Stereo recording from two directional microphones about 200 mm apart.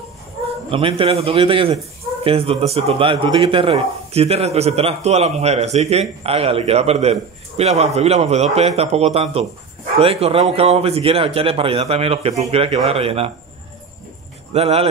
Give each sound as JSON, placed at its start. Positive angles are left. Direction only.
{"t": 0.7, "sound": "a man's voice", "side_deg": -25}
{"t": 14.5, "sound": "a man's voice", "side_deg": -30}